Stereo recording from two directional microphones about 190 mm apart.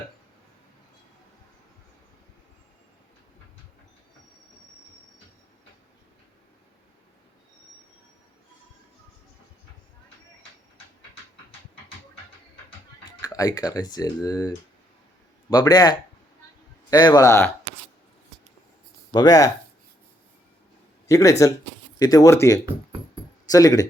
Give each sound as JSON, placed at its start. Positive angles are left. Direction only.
{"t": 13.1, "sound": "speech", "side_deg": 20}
{"t": 19.1, "sound": "speech", "side_deg": 20}
{"t": 21.1, "sound": "speech", "side_deg": 15}